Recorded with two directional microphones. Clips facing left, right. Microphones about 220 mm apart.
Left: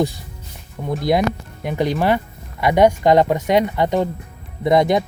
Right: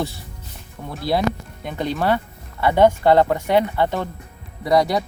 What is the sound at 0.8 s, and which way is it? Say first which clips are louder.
A man's voice: left 3 dB; 15° left (ahead or behind).